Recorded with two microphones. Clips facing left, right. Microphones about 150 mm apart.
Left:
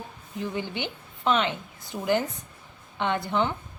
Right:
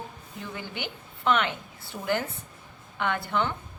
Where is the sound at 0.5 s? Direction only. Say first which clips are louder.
Left 5 dB; 20° left (ahead or behind).